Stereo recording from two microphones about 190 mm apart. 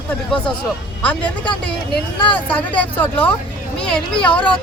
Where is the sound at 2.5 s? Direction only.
10° left (ahead or behind).